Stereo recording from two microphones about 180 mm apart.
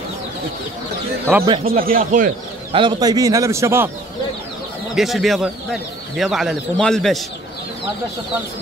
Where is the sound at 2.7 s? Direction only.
25° right (ahead or behind).